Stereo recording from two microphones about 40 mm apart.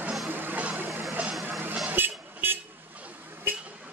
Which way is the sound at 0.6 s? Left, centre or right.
Right.